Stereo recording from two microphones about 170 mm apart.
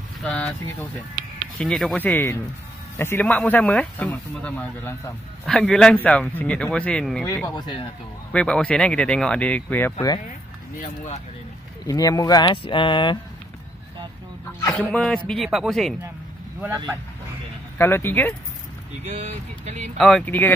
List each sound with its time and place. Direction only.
0.2 s speech: 5° left (ahead or behind)
7.2 s speech: 20° left (ahead or behind)
8.3 s speech: 5° left (ahead or behind)
9.9 s speech: 25° left (ahead or behind)
10.8 s speech: 45° left (ahead or behind)
11.8 s speech: 20° left (ahead or behind)
14.8 s speech: centre (ahead or behind)
17.7 s speech: 15° left (ahead or behind)
19.0 s speech: 40° right (ahead or behind)
20.0 s speech: 5° left (ahead or behind)